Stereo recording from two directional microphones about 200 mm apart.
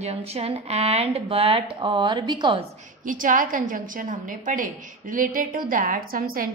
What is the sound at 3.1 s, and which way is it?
A woman's voice, 40° right (ahead or behind).